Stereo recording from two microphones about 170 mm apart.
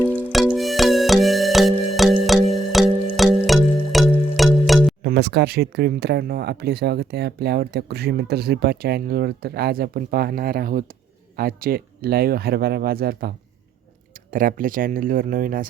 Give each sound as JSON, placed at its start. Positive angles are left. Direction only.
{"t": 0.3, "sound": "music", "side_deg": 0}
{"t": 5.0, "sound": "speech", "side_deg": -75}
{"t": 14.3, "sound": "speech", "side_deg": -55}